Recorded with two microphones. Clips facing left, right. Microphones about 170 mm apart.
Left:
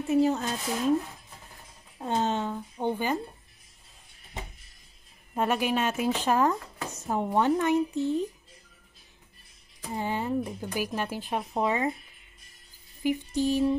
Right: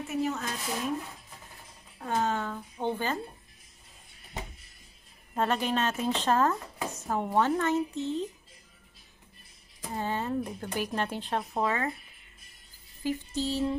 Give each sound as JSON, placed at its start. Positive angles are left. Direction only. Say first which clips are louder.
{"t": 0.1, "sound": "a woman's voice", "louder": "left 8 dB", "side_deg": 30}
{"t": 2.0, "sound": "a woman's voice", "louder": "left 2 dB", "side_deg": 25}
{"t": 5.3, "sound": "speech", "louder": "left 2 dB", "side_deg": 10}
{"t": 9.9, "sound": "speech", "louder": "left 2 dB", "side_deg": 15}
{"t": 13.0, "sound": "speech", "louder": "left 5 dB", "side_deg": 15}